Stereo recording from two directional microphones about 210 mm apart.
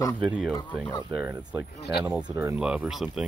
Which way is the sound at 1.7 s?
50° left (ahead or behind).